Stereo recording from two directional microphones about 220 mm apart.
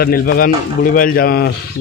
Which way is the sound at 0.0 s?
40° left (ahead or behind).